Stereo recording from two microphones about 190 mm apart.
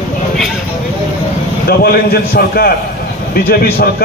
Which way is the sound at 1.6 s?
55° left (ahead or behind).